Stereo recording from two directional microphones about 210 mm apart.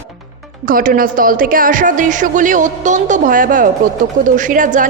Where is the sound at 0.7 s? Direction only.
40° right (ahead or behind).